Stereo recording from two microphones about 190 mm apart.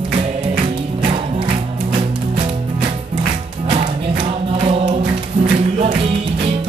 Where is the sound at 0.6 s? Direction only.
25° right (ahead or behind).